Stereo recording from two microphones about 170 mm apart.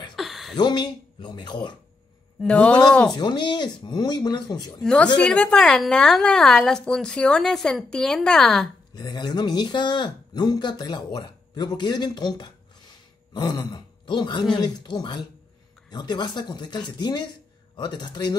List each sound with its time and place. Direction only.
0.1 s a sound: centre (ahead or behind)
0.6 s speech: 25° left (ahead or behind)
2.4 s a man's voice: 5° left (ahead or behind)
3.2 s speech: 25° left (ahead or behind)
4.8 s a woman's voice: 5° left (ahead or behind)
8.9 s speech: 25° left (ahead or behind)
13.3 s throat clearing: 25° left (ahead or behind)
14.6 s speech: 25° left (ahead or behind)